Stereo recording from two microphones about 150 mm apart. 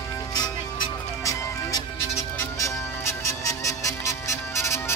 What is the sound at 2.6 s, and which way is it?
Music, 20° left (ahead or behind).